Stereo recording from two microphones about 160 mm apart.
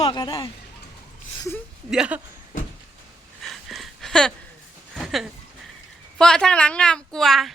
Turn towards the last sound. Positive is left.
turn(degrees=0)  # may be behind; listen again after turning